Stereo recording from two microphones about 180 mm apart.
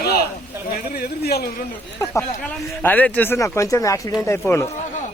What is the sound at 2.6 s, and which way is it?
Speech, 10° left (ahead or behind).